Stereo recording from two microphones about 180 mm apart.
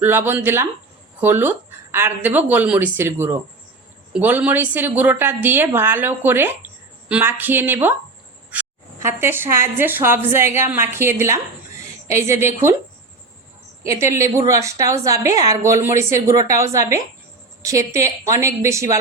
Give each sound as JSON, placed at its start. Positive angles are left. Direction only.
{"t": 0.0, "sound": "a woman's voice", "side_deg": -10}
{"t": 13.8, "sound": "a woman's voice", "side_deg": -15}